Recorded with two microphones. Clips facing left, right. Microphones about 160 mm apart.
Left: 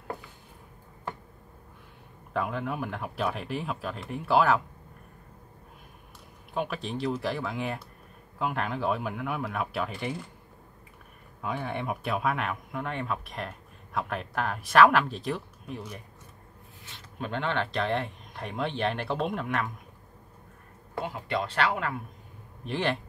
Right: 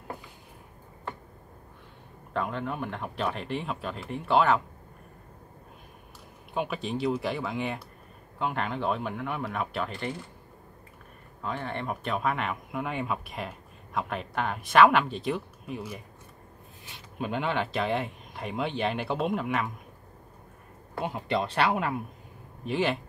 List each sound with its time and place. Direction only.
2.3 s speech: 5° left (ahead or behind)
6.5 s speech: centre (ahead or behind)
11.4 s speech: 10° left (ahead or behind)
21.0 s speech: 20° right (ahead or behind)
22.7 s speech: centre (ahead or behind)